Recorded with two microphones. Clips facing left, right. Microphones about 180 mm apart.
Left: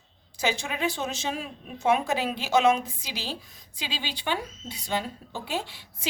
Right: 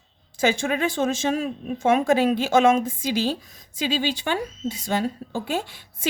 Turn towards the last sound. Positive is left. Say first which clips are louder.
# right 6 dB
turn(degrees=-50)  # may be behind; listen again after turning